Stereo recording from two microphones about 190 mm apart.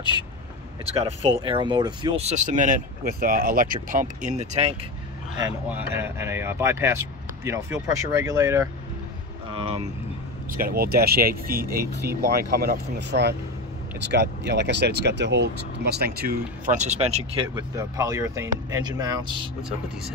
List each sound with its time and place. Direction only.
1.0 s speech: 30° right (ahead or behind)
5.4 s speech: 10° right (ahead or behind)
9.5 s speech: 30° right (ahead or behind)
10.5 s speech: 50° right (ahead or behind); by 17.6 s 30° right (ahead or behind)
17.7 s speech: 15° right (ahead or behind)